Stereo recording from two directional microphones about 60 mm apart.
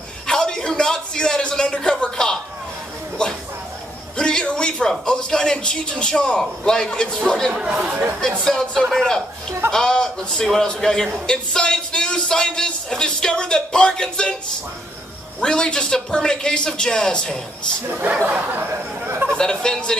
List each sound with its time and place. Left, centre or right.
0.3 s a sound: centre
4.2 s a man's voice: centre
15.4 s speech: centre
17.9 s speech: right
18.7 s speech: right
19.3 s speech: centre